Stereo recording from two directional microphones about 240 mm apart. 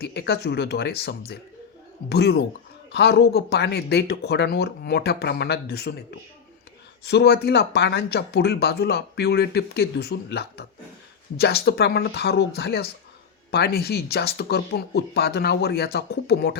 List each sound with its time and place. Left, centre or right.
0.0 s speech: left